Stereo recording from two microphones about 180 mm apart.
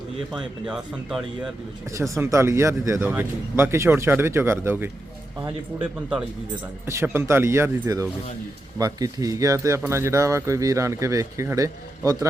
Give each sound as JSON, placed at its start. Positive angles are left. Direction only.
{"t": 0.3, "sound": "speech", "side_deg": -5}
{"t": 2.0, "sound": "speech", "side_deg": -15}
{"t": 6.8, "sound": "speech", "side_deg": -15}